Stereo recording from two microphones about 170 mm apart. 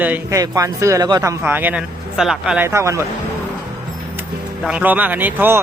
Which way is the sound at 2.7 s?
15° right (ahead or behind).